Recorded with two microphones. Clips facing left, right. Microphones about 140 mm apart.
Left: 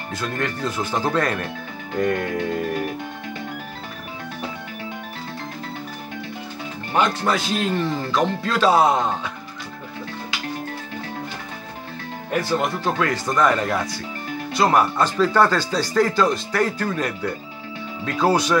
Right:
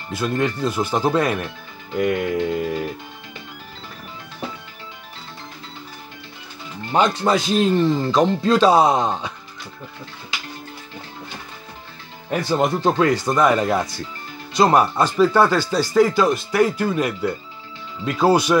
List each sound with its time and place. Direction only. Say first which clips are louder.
0.1 s speech: right 5 dB; 15° right (ahead or behind)
6.9 s speech: right 3 dB; 20° right (ahead or behind)
12.4 s speech: right 6 dB; 20° right (ahead or behind)